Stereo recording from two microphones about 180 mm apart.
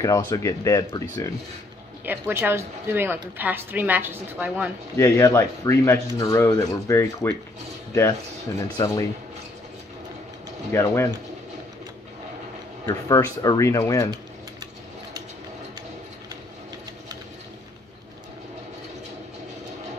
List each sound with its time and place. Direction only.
0.3 s speech: 15° left (ahead or behind)
2.0 s speech: 10° right (ahead or behind)
4.9 s speech: 15° left (ahead or behind)
8.7 s speech: 20° left (ahead or behind)
10.7 s speech: 15° left (ahead or behind)
12.8 s speech: 20° left (ahead or behind)